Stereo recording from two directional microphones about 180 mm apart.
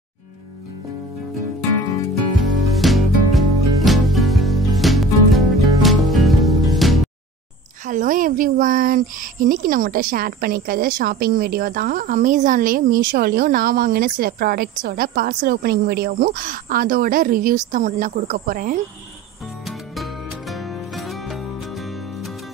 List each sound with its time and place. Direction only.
2.8 s music: centre (ahead or behind)
7.8 s speech: 45° right (ahead or behind)
19.6 s music: centre (ahead or behind)